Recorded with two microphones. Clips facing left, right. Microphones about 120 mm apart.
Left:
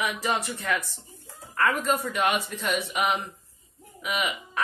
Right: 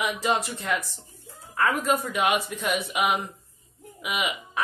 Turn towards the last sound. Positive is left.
turn(degrees=-10)  # may be behind; listen again after turning